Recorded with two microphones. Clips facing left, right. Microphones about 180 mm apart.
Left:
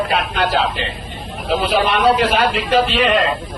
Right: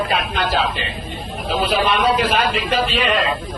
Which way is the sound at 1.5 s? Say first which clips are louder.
Left 2 dB; 65° left (ahead or behind).